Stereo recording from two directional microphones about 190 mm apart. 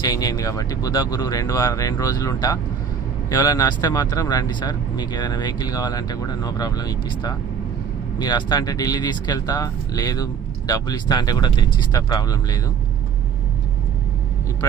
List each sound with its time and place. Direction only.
0.0 s speech: 20° left (ahead or behind)